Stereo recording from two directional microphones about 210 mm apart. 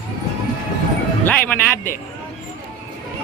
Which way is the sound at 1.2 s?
10° left (ahead or behind).